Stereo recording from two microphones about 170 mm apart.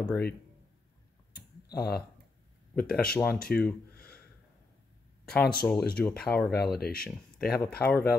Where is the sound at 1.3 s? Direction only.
65° left (ahead or behind).